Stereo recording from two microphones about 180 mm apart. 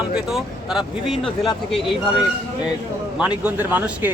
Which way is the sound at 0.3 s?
Centre (ahead or behind).